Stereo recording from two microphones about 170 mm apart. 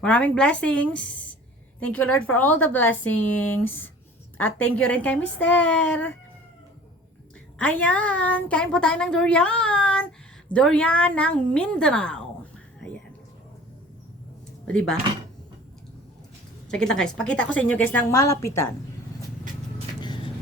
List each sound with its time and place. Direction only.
0.0 s a woman's voice: 5° left (ahead or behind)
7.6 s a woman's voice: 10° left (ahead or behind)
14.7 s a woman's voice: 5° left (ahead or behind)
16.7 s a woman's voice: 5° left (ahead or behind)
20.0 s vehicle: 25° left (ahead or behind)